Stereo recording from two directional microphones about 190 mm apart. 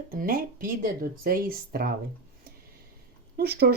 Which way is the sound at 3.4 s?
55° right (ahead or behind).